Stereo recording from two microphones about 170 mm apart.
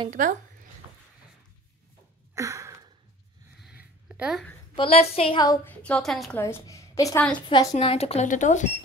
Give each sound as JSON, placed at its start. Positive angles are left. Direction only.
{"t": 0.1, "sound": "speech", "side_deg": -50}
{"t": 2.3, "sound": "a sound", "side_deg": -15}
{"t": 3.5, "sound": "a sound", "side_deg": -5}
{"t": 4.7, "sound": "a woman's voice", "side_deg": 35}
{"t": 5.7, "sound": "a woman's voice", "side_deg": 5}
{"t": 6.3, "sound": "a woman's voice", "side_deg": 15}